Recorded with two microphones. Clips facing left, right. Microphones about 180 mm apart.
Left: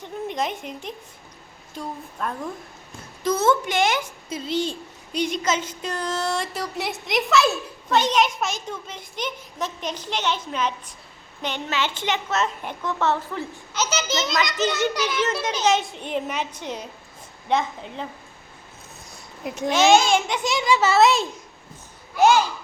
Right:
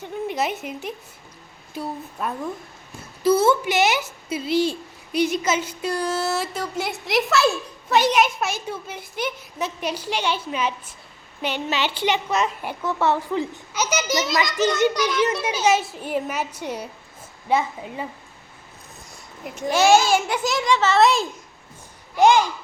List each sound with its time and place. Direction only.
0.0 s a woman's voice: 5° right (ahead or behind)
19.7 s a child's voice: 10° right (ahead or behind)
22.2 s a woman's voice: 15° right (ahead or behind)